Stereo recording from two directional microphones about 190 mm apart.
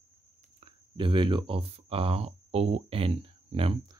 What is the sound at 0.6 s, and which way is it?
Speech, 25° right (ahead or behind).